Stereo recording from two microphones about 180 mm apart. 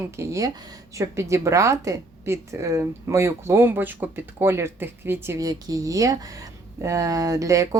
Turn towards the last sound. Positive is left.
turn(degrees=-20)  # may be behind; listen again after turning